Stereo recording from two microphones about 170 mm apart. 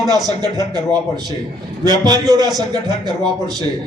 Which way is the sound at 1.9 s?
25° right (ahead or behind).